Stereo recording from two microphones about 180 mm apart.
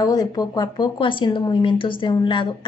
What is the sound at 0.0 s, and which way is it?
Speech, 20° left (ahead or behind).